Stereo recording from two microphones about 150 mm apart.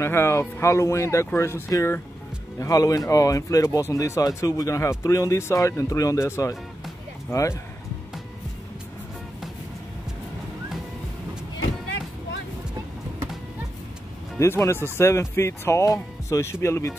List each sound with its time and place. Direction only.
0.0 s speech: 15° left (ahead or behind)
14.4 s speech: 20° left (ahead or behind)